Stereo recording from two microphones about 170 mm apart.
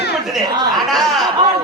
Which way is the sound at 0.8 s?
Centre (ahead or behind).